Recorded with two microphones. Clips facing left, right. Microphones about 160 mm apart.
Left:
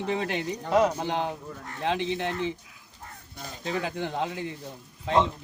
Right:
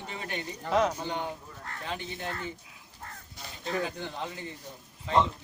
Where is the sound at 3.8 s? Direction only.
90° left.